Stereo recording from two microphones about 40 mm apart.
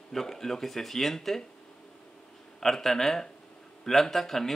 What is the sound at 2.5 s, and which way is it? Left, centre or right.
Speech, centre.